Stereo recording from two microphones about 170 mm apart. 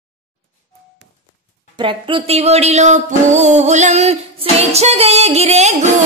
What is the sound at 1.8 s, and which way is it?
Speech, 30° right (ahead or behind).